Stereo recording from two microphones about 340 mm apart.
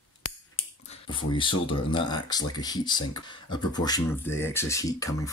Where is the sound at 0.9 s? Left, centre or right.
Centre.